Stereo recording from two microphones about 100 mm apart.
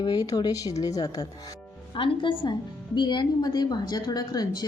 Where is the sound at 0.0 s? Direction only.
40° left (ahead or behind).